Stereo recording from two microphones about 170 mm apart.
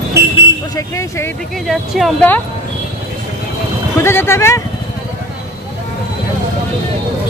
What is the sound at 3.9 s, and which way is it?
Speech, 15° left (ahead or behind).